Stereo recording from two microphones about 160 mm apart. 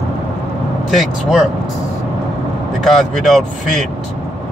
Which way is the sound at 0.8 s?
Centre (ahead or behind).